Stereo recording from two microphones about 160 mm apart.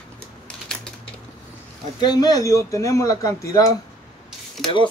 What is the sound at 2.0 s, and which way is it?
Speech, 25° left (ahead or behind).